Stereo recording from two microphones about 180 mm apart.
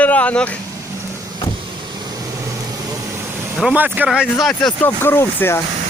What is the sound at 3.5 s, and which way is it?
Speech, 5° right (ahead or behind).